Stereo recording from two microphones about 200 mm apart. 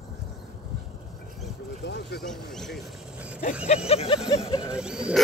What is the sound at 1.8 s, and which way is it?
Vehicle, 60° left (ahead or behind).